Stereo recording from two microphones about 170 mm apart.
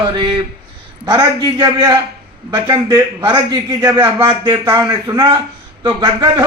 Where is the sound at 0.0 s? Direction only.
25° right (ahead or behind).